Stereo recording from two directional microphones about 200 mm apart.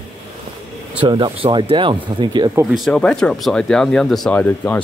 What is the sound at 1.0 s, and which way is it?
Speech, 25° right (ahead or behind).